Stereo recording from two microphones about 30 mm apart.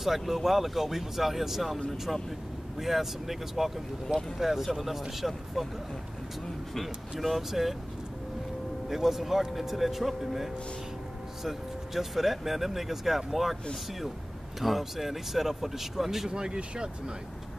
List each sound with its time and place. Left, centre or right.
0.3 s speech: centre
2.8 s speech: centre
6.7 s speech: centre
8.8 s speech: centre
14.6 s speech: centre
16.3 s speech: right